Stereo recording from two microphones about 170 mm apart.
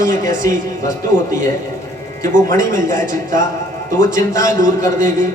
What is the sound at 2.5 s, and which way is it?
A man's voice, 50° right (ahead or behind).